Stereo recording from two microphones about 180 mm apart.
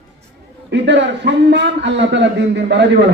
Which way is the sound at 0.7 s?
80° right.